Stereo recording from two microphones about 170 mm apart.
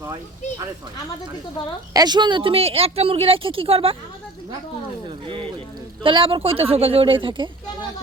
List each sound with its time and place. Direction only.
1.9 s a woman's voice: 25° right (ahead or behind)
5.0 s a woman's voice: 30° right (ahead or behind)